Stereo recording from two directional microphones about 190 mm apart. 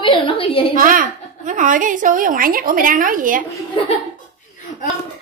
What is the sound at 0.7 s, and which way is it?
A woman's voice, 45° right (ahead or behind).